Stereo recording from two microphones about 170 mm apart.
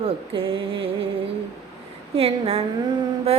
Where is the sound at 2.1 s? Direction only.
35° right (ahead or behind).